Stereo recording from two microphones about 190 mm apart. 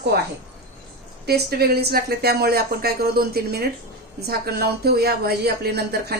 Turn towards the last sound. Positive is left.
turn(degrees=-55)  # may be behind; listen again after turning